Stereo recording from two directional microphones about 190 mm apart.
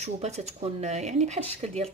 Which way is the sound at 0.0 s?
35° right (ahead or behind).